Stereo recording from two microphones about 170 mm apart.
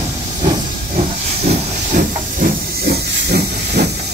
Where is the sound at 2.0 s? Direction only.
65° right (ahead or behind).